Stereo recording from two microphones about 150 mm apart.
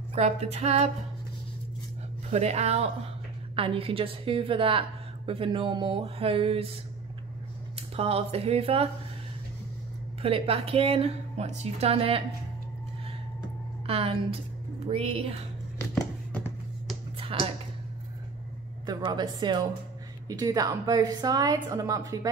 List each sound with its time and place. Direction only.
0.1 s speech: 45° right (ahead or behind)
2.3 s a woman's voice: 45° right (ahead or behind)
7.9 s a woman's voice: 40° right (ahead or behind)
10.2 s a woman's voice: 40° right (ahead or behind)
13.8 s a woman's voice: 40° right (ahead or behind)
17.2 s a sound: 35° right (ahead or behind)
18.9 s a woman's voice: 30° right (ahead or behind)